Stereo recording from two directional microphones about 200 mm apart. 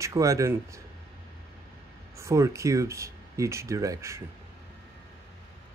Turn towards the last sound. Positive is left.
turn(degrees=-15)  # may be behind; listen again after turning